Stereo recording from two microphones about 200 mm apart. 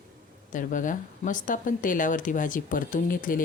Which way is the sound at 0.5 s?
40° left (ahead or behind).